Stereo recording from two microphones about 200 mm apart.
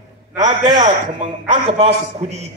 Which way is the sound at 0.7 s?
40° right (ahead or behind).